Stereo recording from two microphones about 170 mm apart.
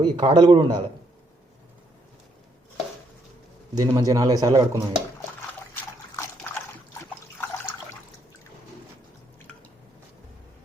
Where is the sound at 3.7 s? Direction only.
20° right (ahead or behind).